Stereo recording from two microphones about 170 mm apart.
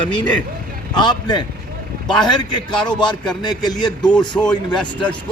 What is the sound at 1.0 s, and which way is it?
A man's voice, 25° left (ahead or behind).